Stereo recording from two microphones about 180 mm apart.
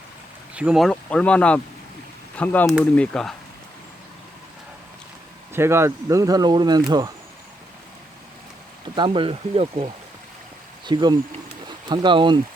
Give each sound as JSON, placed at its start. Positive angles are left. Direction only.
{"t": 0.5, "sound": "speech", "side_deg": -5}
{"t": 5.5, "sound": "speech", "side_deg": -15}
{"t": 9.0, "sound": "speech", "side_deg": -30}